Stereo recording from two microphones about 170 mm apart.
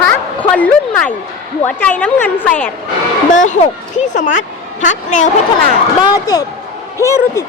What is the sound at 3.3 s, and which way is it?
A woman's voice, 45° left (ahead or behind).